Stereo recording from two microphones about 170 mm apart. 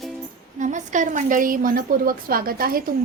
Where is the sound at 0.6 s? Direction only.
45° right (ahead or behind).